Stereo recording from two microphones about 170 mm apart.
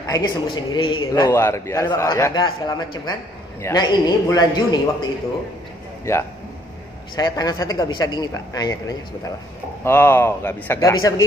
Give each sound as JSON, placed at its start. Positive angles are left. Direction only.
{"t": 0.0, "sound": "a man's voice", "side_deg": 20}
{"t": 7.2, "sound": "a man's voice", "side_deg": 25}